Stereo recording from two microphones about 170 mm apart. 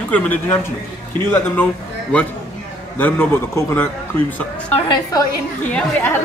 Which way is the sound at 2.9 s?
10° left (ahead or behind).